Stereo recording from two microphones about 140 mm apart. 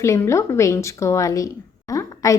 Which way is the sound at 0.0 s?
20° left (ahead or behind).